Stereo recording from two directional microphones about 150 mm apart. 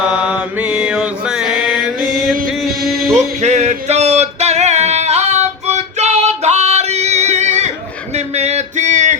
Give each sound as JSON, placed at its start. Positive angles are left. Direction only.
{"t": 0.0, "sound": "mantra", "side_deg": -5}
{"t": 2.5, "sound": "music", "side_deg": 0}
{"t": 3.2, "sound": "male singing", "side_deg": -50}
{"t": 8.1, "sound": "a sound", "side_deg": -45}